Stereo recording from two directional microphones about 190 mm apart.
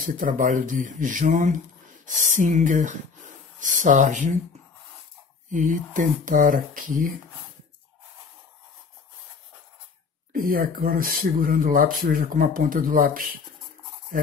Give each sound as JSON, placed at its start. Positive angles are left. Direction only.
{"t": 0.0, "sound": "speech", "side_deg": -45}
{"t": 5.5, "sound": "speech", "side_deg": -45}
{"t": 10.3, "sound": "speech", "side_deg": -50}